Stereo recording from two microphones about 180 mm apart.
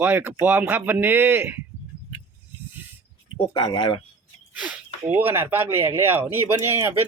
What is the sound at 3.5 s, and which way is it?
Speech, 25° left (ahead or behind).